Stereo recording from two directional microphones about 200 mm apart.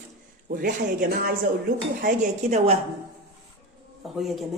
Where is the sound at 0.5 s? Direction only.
45° right (ahead or behind).